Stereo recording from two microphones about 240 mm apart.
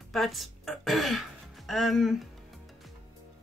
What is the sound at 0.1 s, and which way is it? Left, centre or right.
A woman's voice, centre.